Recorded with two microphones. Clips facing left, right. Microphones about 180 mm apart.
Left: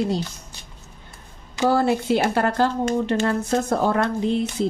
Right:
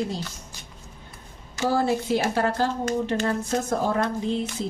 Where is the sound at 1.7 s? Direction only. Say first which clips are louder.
Left 3 dB; 65° left (ahead or behind).